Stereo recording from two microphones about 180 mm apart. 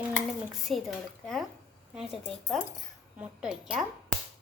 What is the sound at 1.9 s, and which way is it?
A woman's voice, centre (ahead or behind).